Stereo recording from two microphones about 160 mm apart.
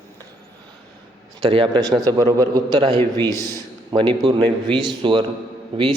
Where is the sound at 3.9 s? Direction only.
35° right (ahead or behind).